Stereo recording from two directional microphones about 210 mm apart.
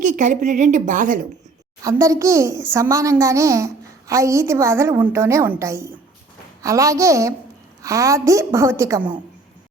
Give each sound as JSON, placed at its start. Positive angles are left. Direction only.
{"t": 0.0, "sound": "a woman's voice", "side_deg": -35}
{"t": 1.8, "sound": "a child's voice", "side_deg": -15}